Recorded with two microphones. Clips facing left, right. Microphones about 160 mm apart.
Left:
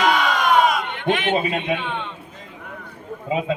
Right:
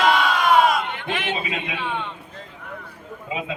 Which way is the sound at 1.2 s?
50° left (ahead or behind).